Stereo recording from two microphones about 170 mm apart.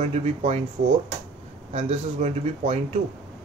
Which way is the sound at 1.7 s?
40° right (ahead or behind).